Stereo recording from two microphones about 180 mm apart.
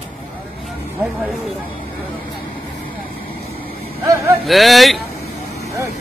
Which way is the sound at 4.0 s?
15° right (ahead or behind).